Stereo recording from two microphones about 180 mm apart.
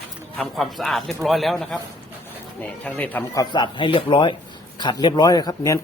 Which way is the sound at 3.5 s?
25° left (ahead or behind).